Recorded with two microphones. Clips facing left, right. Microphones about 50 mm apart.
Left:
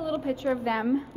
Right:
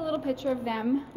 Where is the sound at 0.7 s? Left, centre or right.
Left.